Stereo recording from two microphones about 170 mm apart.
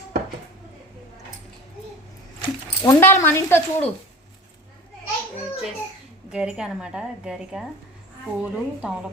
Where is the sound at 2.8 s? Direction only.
15° left (ahead or behind).